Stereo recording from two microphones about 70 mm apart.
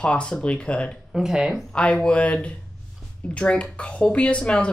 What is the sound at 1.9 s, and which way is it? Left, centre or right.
Speech, centre.